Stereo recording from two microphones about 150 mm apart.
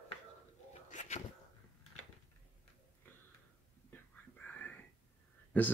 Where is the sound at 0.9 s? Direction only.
50° left (ahead or behind).